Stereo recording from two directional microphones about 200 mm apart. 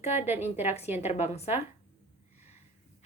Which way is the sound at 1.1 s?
30° left (ahead or behind).